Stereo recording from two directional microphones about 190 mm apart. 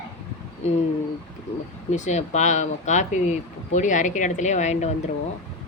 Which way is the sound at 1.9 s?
40° left (ahead or behind).